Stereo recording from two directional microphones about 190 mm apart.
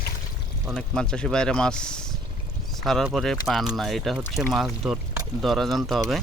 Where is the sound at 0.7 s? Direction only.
5° left (ahead or behind).